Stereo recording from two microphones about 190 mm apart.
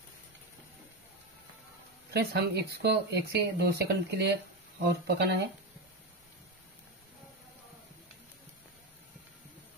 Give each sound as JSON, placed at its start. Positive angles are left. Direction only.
{"t": 2.1, "sound": "speech", "side_deg": -60}